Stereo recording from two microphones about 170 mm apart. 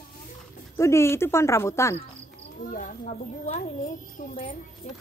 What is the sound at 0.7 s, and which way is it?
Speech, 15° left (ahead or behind).